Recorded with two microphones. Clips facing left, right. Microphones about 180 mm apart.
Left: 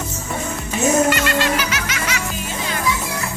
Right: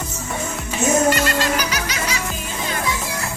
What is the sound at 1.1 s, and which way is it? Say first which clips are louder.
Music: left 1 dB; 40° right (ahead or behind).